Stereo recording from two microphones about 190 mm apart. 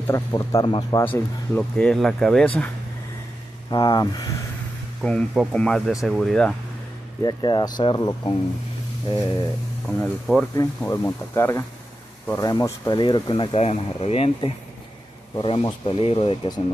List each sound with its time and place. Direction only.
0.0 s speech: 15° left (ahead or behind)
1.0 s speech: 10° left (ahead or behind)
3.7 s speech: 20° left (ahead or behind)
5.0 s speech: centre (ahead or behind)
7.2 s speech: 20° left (ahead or behind)
9.9 s speech: 5° left (ahead or behind)
10.5 s speech: 15° left (ahead or behind)